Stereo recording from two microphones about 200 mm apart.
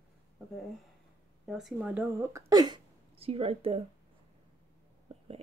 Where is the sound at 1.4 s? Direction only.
5° right (ahead or behind); by 3.8 s 30° right (ahead or behind).